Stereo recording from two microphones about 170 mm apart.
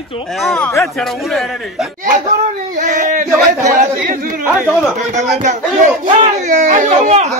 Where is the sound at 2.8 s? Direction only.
45° right (ahead or behind).